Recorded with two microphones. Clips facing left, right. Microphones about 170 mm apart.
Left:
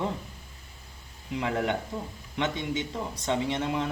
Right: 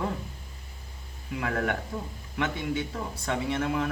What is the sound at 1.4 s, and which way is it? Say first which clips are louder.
Speech: left 1 dB; 20° left (ahead or behind).